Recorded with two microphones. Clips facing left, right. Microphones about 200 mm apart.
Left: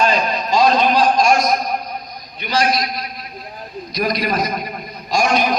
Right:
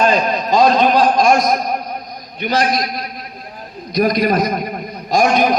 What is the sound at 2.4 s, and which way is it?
A man's voice, 50° right (ahead or behind).